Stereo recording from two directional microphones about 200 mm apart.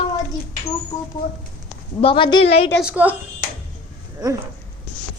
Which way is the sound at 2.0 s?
25° left (ahead or behind).